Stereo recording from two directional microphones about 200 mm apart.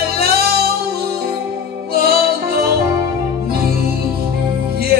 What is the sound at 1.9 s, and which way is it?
Music, 50° right (ahead or behind).